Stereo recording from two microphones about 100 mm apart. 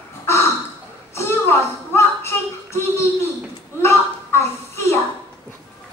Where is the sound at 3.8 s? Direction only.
25° left (ahead or behind).